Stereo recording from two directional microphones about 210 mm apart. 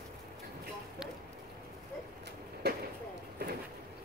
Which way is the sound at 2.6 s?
50° right (ahead or behind).